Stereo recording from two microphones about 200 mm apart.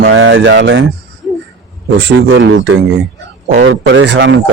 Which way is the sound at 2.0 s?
65° right (ahead or behind).